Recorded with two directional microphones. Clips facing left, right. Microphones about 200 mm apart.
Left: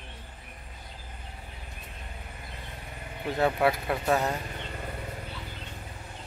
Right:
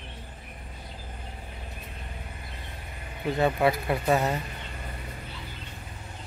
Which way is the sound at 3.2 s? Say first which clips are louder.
Right 1 dB; centre (ahead or behind).